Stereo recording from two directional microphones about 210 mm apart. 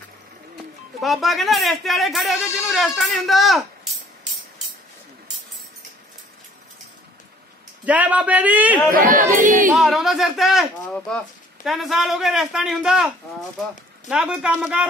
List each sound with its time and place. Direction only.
1.0 s speech: centre (ahead or behind)
7.8 s speech: 5° right (ahead or behind)
8.9 s speech: 40° right (ahead or behind)
9.8 s speech: centre (ahead or behind)